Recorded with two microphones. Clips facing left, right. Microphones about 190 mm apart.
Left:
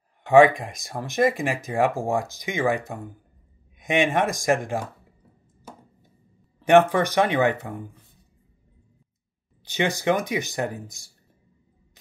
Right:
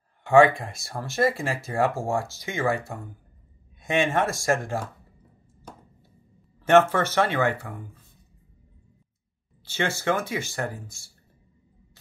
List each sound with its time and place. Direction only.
0.2 s speech: 15° left (ahead or behind)
6.6 s speech: 15° left (ahead or behind)
9.7 s speech: 15° left (ahead or behind)